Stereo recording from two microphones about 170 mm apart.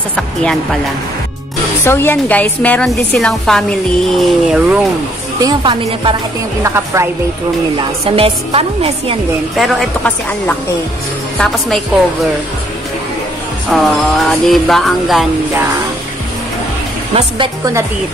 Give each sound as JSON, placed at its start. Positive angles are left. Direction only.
{"t": 0.1, "sound": "a woman's voice", "side_deg": 5}
{"t": 1.9, "sound": "a woman's voice", "side_deg": 15}
{"t": 5.4, "sound": "a woman's voice", "side_deg": -25}
{"t": 6.6, "sound": "a woman's voice", "side_deg": -15}
{"t": 8.0, "sound": "a woman's voice", "side_deg": -35}
{"t": 9.6, "sound": "a woman's voice", "side_deg": 0}
{"t": 13.7, "sound": "a woman's voice", "side_deg": 0}